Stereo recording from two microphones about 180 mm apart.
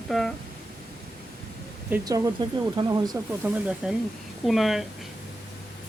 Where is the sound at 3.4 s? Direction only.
10° right (ahead or behind).